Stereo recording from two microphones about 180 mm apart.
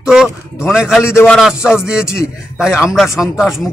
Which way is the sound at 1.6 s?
5° right (ahead or behind).